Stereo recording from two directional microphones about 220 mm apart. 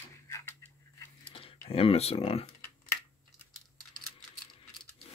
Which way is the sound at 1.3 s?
25° left (ahead or behind).